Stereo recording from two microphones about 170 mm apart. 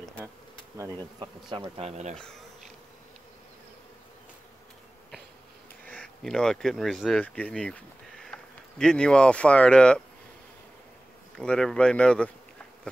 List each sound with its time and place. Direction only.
0.7 s speech: 20° right (ahead or behind)
1.8 s speech: 40° right (ahead or behind)
2.1 s speech: 5° left (ahead or behind)
5.9 s speech: 5° left (ahead or behind)
11.3 s speech: 5° left (ahead or behind)